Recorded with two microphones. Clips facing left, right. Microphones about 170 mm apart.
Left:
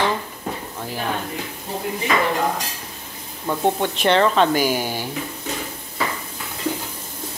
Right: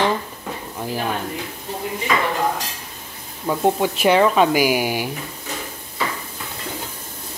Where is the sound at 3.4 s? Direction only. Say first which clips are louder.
Right 2 dB; 5° right (ahead or behind).